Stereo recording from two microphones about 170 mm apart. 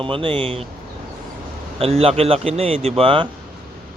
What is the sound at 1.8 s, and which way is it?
A man's voice, 35° right (ahead or behind).